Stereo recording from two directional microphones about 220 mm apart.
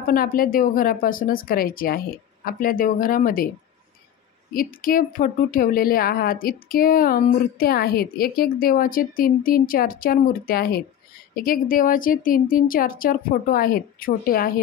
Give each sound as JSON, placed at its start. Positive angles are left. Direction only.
{"t": 0.0, "sound": "speech", "side_deg": 40}
{"t": 4.8, "sound": "speech", "side_deg": 40}